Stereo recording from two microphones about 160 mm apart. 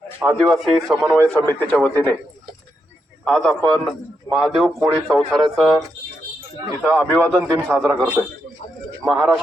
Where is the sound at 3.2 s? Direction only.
5° left (ahead or behind).